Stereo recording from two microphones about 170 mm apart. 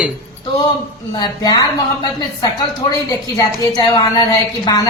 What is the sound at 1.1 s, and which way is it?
A woman's voice, 20° left (ahead or behind).